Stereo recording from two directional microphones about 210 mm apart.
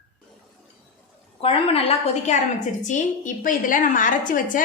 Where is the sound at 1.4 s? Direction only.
30° left (ahead or behind).